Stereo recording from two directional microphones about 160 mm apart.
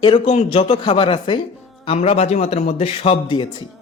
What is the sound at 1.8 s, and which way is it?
A woman's voice, 40° left (ahead or behind).